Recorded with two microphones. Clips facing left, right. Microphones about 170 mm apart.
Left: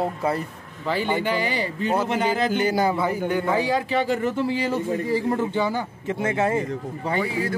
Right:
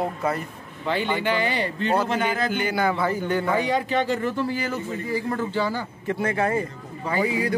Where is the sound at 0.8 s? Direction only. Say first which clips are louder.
Left 1 dB; 5° left (ahead or behind).